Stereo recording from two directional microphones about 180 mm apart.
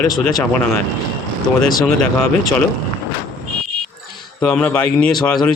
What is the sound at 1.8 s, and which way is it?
Speech, centre (ahead or behind).